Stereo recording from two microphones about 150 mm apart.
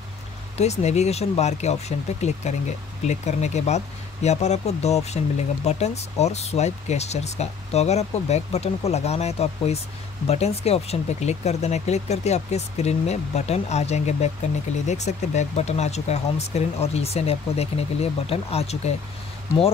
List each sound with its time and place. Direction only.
0.6 s speech: 45° left (ahead or behind)